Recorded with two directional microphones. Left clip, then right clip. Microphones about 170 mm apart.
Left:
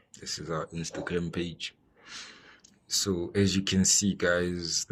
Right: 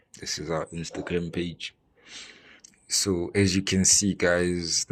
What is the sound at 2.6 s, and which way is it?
Speech, 20° right (ahead or behind).